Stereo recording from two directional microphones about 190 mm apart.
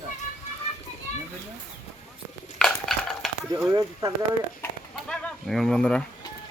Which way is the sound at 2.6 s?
Centre (ahead or behind).